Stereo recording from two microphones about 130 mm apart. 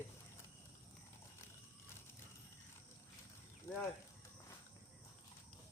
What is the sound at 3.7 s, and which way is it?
Speech, 25° left (ahead or behind).